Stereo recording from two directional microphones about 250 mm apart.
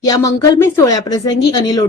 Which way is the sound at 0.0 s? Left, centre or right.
Centre.